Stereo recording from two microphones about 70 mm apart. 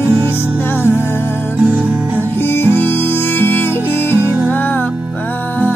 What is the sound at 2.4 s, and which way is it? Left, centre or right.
Music, left.